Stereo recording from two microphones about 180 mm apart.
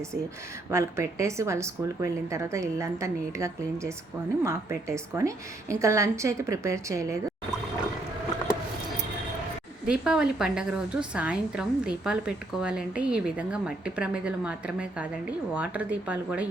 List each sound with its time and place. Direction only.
0.7 s speech: 15° right (ahead or behind)
9.8 s a woman's voice: 5° right (ahead or behind)